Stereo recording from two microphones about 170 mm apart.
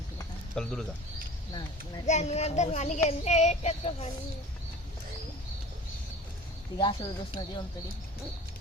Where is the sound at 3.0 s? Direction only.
40° left (ahead or behind).